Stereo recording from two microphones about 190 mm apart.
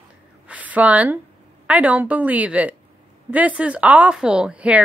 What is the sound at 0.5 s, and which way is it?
A woman's voice, 10° right (ahead or behind).